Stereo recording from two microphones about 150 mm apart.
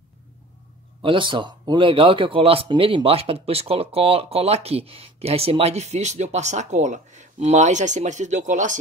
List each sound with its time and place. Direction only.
1.0 s speech: 35° right (ahead or behind); by 8.7 s 55° right (ahead or behind)